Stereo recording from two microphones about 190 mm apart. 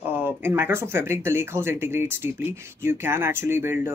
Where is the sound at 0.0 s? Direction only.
10° right (ahead or behind).